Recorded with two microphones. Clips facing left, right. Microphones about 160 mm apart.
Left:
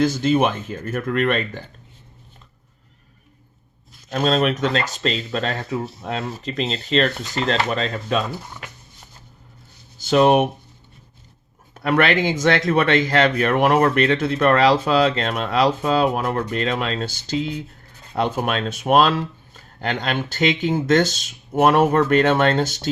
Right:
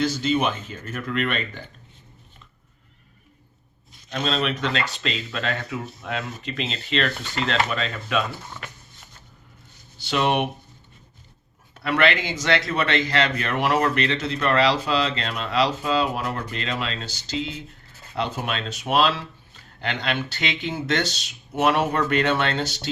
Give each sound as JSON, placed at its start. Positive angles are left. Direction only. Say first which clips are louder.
{"t": 0.0, "sound": "a man's voice", "louder": "left 5 dB", "side_deg": 50}
{"t": 4.1, "sound": "speech", "louder": "left 6 dB", "side_deg": 45}
{"t": 10.0, "sound": "a man's voice", "louder": "left 7 dB", "side_deg": 45}
{"t": 11.7, "sound": "a man's voice", "louder": "left 3 dB", "side_deg": 45}